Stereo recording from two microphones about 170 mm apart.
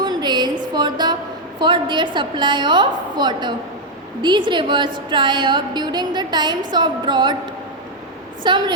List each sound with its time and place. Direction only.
0.0 s a sound: 25° right (ahead or behind)
1.5 s a woman's voice: 25° right (ahead or behind)
8.4 s a woman's voice: 25° right (ahead or behind)